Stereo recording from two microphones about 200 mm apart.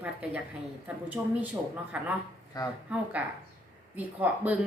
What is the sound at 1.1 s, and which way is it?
Speech, 10° right (ahead or behind).